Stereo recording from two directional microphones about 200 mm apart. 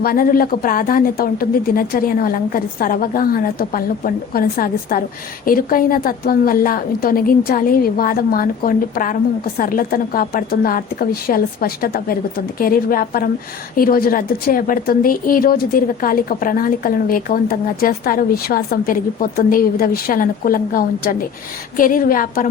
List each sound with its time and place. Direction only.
0.0 s speech: 45° left (ahead or behind)